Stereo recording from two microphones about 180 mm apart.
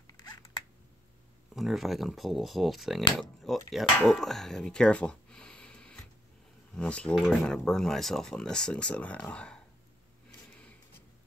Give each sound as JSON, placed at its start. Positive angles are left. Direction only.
{"t": 0.0, "sound": "typing", "side_deg": 20}
{"t": 1.5, "sound": "speech", "side_deg": 0}